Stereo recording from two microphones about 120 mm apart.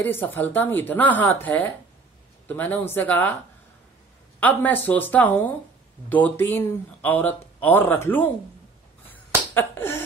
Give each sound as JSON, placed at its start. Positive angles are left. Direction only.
{"t": 0.0, "sound": "speech", "side_deg": 15}
{"t": 2.4, "sound": "speech", "side_deg": 15}
{"t": 4.4, "sound": "speech", "side_deg": 15}
{"t": 9.5, "sound": "finger snapping", "side_deg": 20}